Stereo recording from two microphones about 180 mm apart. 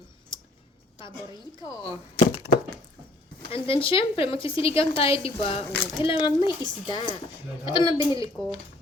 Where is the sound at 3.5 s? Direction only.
30° left (ahead or behind).